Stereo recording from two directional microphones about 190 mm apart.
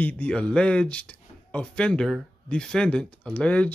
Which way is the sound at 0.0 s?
5° left (ahead or behind).